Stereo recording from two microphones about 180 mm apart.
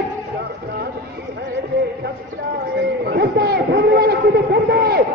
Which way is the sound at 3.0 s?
60° right (ahead or behind).